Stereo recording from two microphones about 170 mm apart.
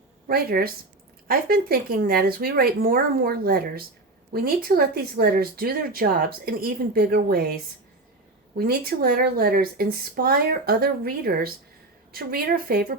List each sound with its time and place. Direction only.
0.3 s speech: 60° right (ahead or behind)
8.5 s speech: 60° right (ahead or behind)